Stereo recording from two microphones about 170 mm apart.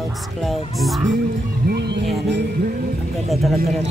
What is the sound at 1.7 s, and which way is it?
Speech, 80° right.